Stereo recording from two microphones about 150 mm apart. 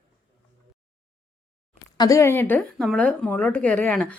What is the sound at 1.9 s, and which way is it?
Speech, 25° left (ahead or behind).